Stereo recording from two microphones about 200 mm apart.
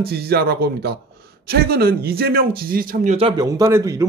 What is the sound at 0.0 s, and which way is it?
Speech, 50° right (ahead or behind).